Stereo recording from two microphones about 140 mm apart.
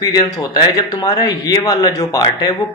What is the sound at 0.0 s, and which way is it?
A man's voice, 30° left (ahead or behind).